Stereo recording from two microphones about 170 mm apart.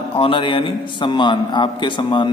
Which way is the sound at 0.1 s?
30° left (ahead or behind).